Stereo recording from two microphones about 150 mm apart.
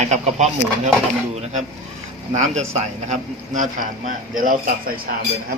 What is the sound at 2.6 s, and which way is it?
A man's voice, 50° right (ahead or behind).